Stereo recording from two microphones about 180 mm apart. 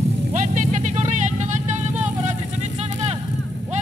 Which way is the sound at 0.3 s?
45° right (ahead or behind).